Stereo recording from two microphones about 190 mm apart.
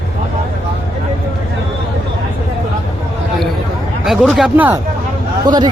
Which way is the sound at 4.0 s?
Centre (ahead or behind).